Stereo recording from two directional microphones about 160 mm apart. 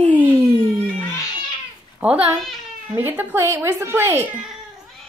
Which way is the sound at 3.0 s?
10° right (ahead or behind).